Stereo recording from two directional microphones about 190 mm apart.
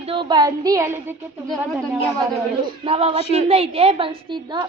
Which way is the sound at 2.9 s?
30° right (ahead or behind).